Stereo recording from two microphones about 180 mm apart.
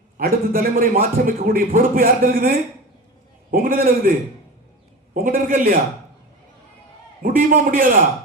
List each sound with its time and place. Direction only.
0.2 s a man's voice: 55° right (ahead or behind)
5.1 s a man's voice: 50° right (ahead or behind)
7.2 s a man's voice: 50° right (ahead or behind)